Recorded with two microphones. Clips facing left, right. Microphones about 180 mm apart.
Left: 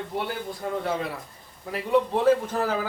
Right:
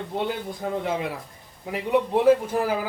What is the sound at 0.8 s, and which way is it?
Speech, 15° right (ahead or behind).